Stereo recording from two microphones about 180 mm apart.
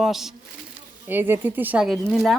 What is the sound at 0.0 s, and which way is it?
A woman's voice, centre (ahead or behind).